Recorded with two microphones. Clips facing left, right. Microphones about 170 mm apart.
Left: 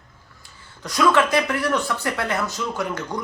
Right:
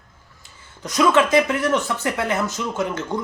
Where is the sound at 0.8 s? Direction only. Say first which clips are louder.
Right 1 dB; 20° right (ahead or behind).